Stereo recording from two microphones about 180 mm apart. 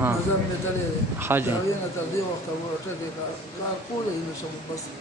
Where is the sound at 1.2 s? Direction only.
10° right (ahead or behind).